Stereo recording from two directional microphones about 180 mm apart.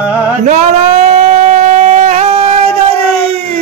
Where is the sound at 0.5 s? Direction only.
40° right (ahead or behind).